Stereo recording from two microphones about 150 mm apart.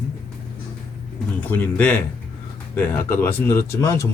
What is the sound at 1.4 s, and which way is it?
Speech, 10° left (ahead or behind).